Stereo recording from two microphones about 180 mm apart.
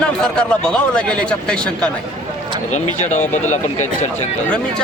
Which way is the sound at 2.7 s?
40° left (ahead or behind).